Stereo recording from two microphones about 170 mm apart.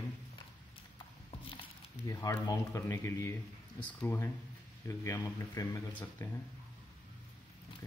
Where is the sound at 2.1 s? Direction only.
20° left (ahead or behind).